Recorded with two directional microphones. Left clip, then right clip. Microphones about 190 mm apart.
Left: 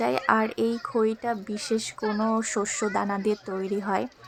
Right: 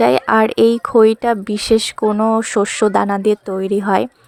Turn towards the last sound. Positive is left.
turn(degrees=-35)  # may be behind; listen again after turning